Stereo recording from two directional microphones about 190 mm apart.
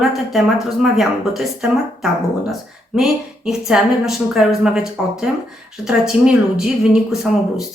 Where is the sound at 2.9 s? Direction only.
5° right (ahead or behind).